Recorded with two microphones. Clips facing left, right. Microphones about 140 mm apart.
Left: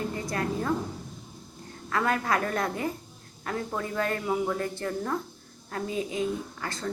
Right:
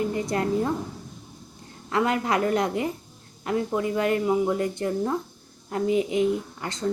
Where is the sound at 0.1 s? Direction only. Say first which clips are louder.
Right 6 dB; 20° right (ahead or behind).